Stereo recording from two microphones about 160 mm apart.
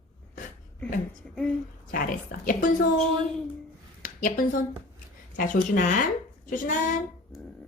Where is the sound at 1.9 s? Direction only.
60° left (ahead or behind).